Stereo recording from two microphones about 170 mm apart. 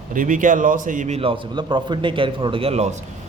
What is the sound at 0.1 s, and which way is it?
A man's voice, 50° right (ahead or behind).